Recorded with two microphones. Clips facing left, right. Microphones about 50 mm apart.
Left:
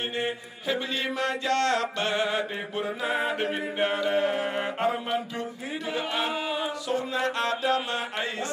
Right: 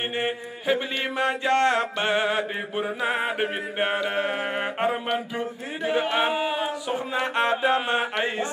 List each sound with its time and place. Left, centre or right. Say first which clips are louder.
0.2 s mantra: right 3 dB; right